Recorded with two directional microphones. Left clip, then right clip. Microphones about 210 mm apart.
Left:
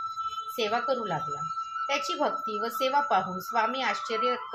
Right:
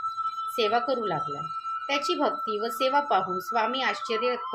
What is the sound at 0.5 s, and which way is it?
Speech, 35° right (ahead or behind).